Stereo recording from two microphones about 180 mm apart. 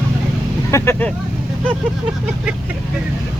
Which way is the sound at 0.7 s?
15° left (ahead or behind).